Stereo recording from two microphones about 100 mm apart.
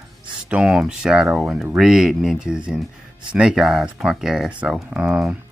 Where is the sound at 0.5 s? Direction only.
5° right (ahead or behind).